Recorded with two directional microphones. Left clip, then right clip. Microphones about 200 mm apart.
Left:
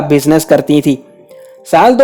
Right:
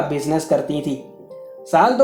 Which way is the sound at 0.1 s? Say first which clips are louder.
Left 10 dB; 55° left (ahead or behind).